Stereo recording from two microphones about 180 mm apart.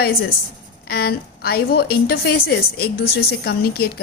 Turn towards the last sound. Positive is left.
turn(degrees=60)  # may be behind; listen again after turning